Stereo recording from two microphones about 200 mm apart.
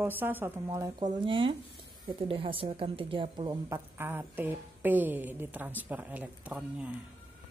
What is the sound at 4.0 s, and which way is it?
A woman's voice, 10° right (ahead or behind).